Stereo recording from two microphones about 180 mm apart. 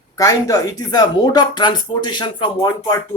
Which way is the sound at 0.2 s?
20° left (ahead or behind).